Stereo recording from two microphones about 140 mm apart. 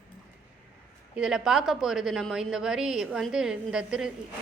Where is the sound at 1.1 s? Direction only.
5° right (ahead or behind).